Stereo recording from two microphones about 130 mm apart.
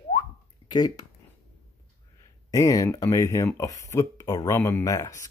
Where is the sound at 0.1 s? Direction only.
30° left (ahead or behind).